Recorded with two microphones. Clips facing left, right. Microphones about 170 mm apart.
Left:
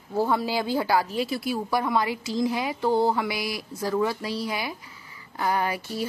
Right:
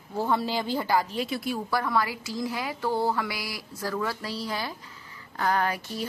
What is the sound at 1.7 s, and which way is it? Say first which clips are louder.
A woman's voice: left 2 dB; 20° left (ahead or behind).